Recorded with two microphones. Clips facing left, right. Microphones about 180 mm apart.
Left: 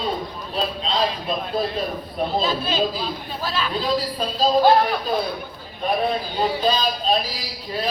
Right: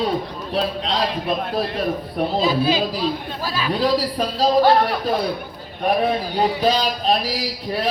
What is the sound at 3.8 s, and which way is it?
Speech, 75° right (ahead or behind).